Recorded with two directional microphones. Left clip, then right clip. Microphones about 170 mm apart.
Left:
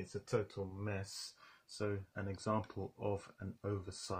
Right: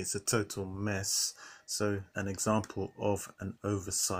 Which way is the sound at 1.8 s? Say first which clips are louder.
Right 7 dB; 35° right (ahead or behind).